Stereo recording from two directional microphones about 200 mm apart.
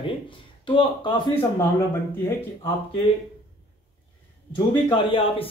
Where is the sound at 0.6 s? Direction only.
25° left (ahead or behind).